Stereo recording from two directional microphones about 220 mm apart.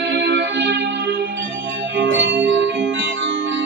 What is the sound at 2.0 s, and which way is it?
Music, 55° right (ahead or behind).